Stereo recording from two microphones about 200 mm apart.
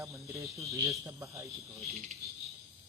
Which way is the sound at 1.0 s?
15° right (ahead or behind).